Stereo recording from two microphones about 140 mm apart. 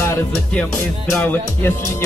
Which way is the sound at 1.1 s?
10° left (ahead or behind).